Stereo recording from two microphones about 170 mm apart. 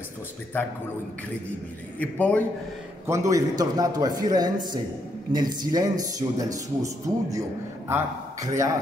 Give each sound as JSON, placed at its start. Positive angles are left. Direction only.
{"t": 2.0, "sound": "a man's voice", "side_deg": 10}
{"t": 3.1, "sound": "a man's voice", "side_deg": -20}